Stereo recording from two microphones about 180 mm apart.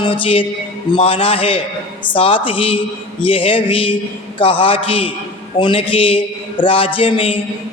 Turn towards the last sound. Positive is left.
turn(degrees=30)  # may be behind; listen again after turning